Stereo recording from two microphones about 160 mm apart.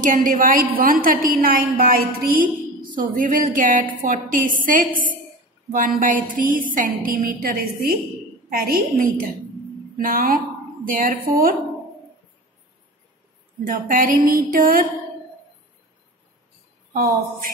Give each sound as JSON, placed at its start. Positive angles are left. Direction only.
{"t": 0.0, "sound": "a woman's voice", "side_deg": -60}
{"t": 2.3, "sound": "music", "side_deg": -60}
{"t": 4.0, "sound": "a woman's voice", "side_deg": -55}
{"t": 13.7, "sound": "a woman's voice", "side_deg": -60}
{"t": 16.9, "sound": "a woman's voice", "side_deg": -60}